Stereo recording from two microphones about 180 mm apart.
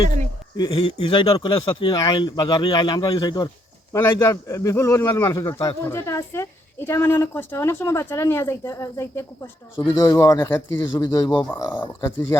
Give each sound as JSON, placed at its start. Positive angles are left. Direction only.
{"t": 0.5, "sound": "a man's voice", "side_deg": 25}